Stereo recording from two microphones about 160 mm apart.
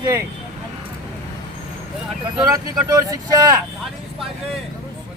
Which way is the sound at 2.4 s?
25° right (ahead or behind).